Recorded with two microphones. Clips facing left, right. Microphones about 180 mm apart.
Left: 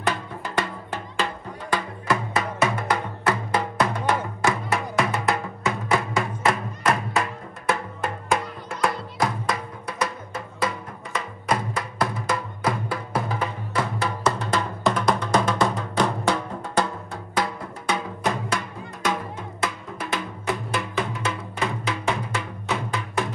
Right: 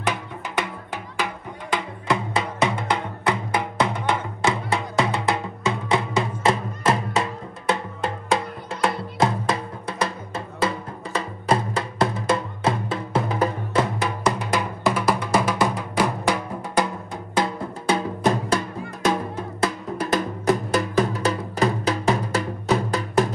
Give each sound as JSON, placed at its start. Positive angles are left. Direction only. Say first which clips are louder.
{"t": 0.0, "sound": "music", "louder": "even", "side_deg": -15}
{"t": 17.3, "sound": "music", "louder": "right 3 dB", "side_deg": -30}